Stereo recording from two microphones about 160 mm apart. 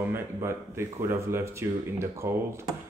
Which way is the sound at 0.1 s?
15° right (ahead or behind).